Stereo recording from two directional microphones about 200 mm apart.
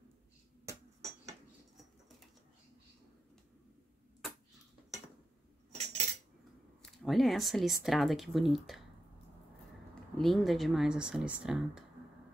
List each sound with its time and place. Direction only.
0.7 s hammer: 15° right (ahead or behind)
5.7 s cutlery: 30° right (ahead or behind)
6.8 s speech: centre (ahead or behind)
10.1 s speech: centre (ahead or behind)